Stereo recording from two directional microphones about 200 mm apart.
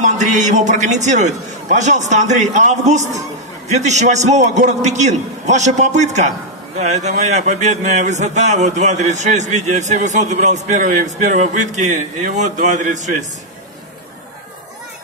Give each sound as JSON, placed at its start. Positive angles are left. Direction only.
{"t": 0.0, "sound": "speech", "side_deg": -35}